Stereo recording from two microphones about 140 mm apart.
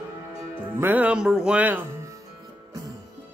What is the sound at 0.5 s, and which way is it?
Speech, 15° right (ahead or behind).